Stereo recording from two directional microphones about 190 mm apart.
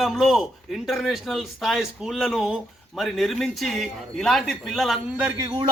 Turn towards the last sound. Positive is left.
turn(degrees=-25)  # may be behind; listen again after turning